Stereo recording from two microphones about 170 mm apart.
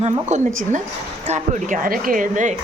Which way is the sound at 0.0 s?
45° right (ahead or behind).